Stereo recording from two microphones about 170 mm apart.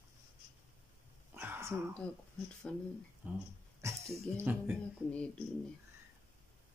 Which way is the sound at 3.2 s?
10° right (ahead or behind).